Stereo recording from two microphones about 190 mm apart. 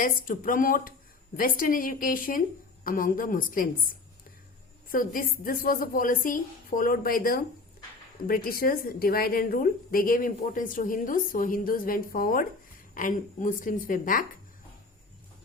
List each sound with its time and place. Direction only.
0.0 s a woman's voice: 45° left (ahead or behind)
4.9 s a woman's voice: 45° left (ahead or behind)